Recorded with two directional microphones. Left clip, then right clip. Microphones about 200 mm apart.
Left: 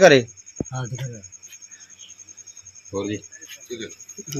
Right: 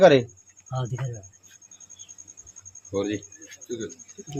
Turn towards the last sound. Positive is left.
turn(degrees=35)  # may be behind; listen again after turning